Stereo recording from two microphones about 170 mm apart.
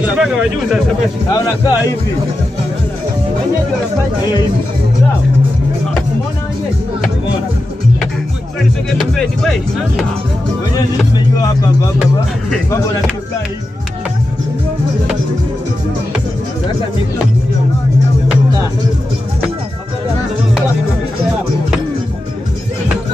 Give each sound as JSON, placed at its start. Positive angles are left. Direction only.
{"t": 0.0, "sound": "speech", "side_deg": -5}
{"t": 1.3, "sound": "speech", "side_deg": 20}
{"t": 8.9, "sound": "speech", "side_deg": 5}